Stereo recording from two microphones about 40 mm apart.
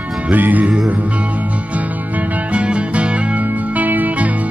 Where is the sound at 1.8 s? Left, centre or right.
Right.